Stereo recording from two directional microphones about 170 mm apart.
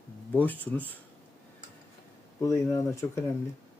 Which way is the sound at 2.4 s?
20° left (ahead or behind).